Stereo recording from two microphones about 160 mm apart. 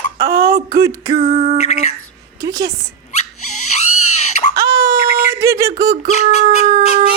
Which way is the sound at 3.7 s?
45° left (ahead or behind).